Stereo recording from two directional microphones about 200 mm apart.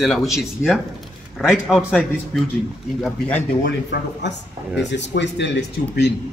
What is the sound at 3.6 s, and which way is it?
Speech, 55° left (ahead or behind).